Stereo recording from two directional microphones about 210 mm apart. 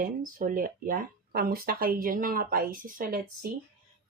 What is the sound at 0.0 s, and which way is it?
Speech, 40° right (ahead or behind).